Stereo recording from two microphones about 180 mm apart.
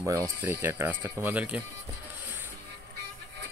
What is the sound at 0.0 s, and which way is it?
Speech, 15° right (ahead or behind).